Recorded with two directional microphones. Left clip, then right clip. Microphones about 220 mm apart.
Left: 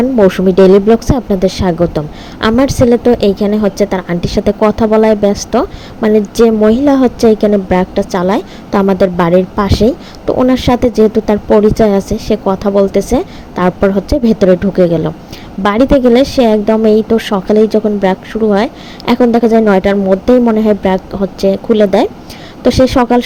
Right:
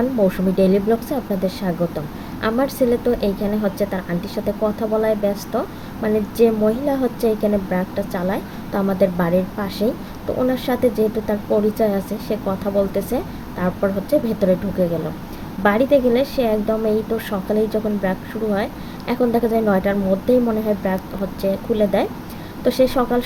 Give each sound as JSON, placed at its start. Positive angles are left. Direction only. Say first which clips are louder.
{"t": 0.3, "sound": "a woman's voice", "louder": "left 11 dB", "side_deg": 30}
{"t": 15.6, "sound": "a woman's voice", "louder": "left 7 dB", "side_deg": 35}